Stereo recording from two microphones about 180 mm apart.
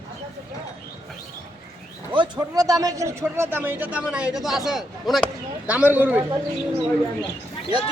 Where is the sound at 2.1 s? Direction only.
25° right (ahead or behind).